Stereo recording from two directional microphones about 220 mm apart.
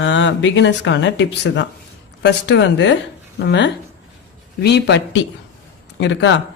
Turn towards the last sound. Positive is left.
turn(degrees=55)  # may be behind; listen again after turning